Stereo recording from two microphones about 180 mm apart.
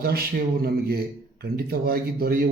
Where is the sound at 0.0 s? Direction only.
60° right (ahead or behind).